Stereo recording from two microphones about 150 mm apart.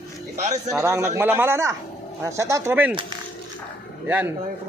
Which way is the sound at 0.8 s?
20° right (ahead or behind).